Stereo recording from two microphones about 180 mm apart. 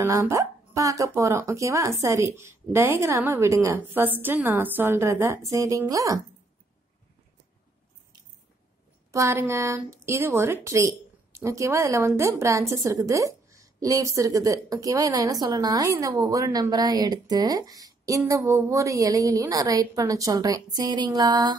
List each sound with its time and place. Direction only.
0.0 s speech: 15° right (ahead or behind)
9.1 s a woman's voice: 15° right (ahead or behind)